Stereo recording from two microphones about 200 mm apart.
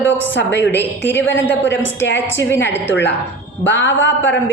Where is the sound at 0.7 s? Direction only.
10° left (ahead or behind).